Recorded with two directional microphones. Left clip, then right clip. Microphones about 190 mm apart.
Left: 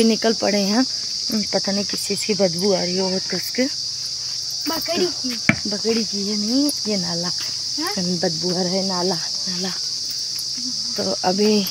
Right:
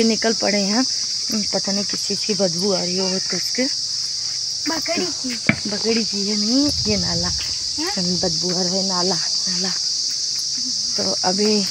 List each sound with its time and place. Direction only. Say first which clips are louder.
0.0 s cricket: even; 5° left (ahead or behind)
2.2 s cricket: left 2 dB; 5° left (ahead or behind)
5.5 s cricket: even; 25° right (ahead or behind)
8.2 s cricket: left 1 dB; 10° right (ahead or behind)
11.2 s speech: left 2 dB; 15° left (ahead or behind)